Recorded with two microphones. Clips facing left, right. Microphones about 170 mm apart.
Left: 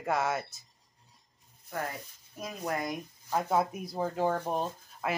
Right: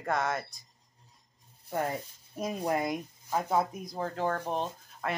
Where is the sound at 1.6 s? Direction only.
30° right (ahead or behind).